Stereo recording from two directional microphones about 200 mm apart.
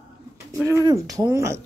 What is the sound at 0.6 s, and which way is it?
Speech, 15° right (ahead or behind).